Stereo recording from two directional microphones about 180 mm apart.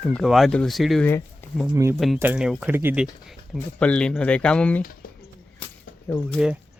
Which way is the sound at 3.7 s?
5° left (ahead or behind).